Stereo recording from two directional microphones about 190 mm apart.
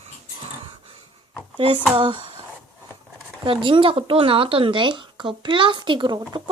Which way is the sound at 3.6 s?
25° right (ahead or behind).